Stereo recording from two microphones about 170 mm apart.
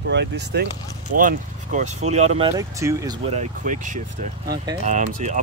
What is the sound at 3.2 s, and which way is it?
Speech, 45° right (ahead or behind).